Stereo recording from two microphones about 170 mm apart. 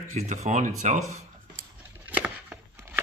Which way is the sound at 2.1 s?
10° right (ahead or behind).